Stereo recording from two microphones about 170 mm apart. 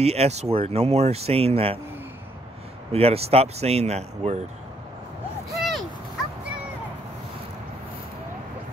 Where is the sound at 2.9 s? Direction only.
35° right (ahead or behind).